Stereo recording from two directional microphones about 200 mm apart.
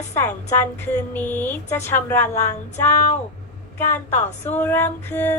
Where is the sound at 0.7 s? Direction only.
10° left (ahead or behind).